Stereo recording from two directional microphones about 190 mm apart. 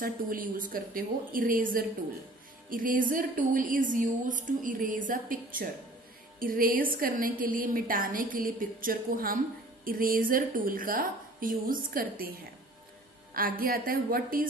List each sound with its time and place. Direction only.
0.0 s a woman's voice: 45° right (ahead or behind)
13.3 s a woman's voice: 50° right (ahead or behind)